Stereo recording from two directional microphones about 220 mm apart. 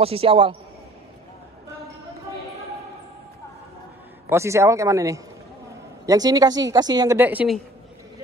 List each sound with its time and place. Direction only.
0.0 s speech: 25° right (ahead or behind)
4.3 s speech: 10° right (ahead or behind)